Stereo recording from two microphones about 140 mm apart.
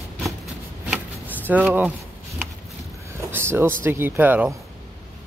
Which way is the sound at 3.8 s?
15° right (ahead or behind).